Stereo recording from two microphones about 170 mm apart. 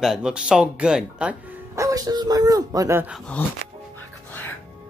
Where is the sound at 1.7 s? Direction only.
20° right (ahead or behind).